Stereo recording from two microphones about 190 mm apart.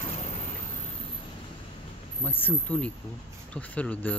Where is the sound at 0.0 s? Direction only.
35° left (ahead or behind).